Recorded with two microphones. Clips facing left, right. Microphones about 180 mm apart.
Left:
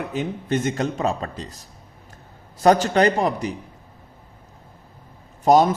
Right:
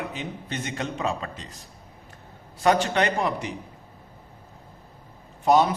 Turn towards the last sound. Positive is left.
turn(degrees=40)  # may be behind; listen again after turning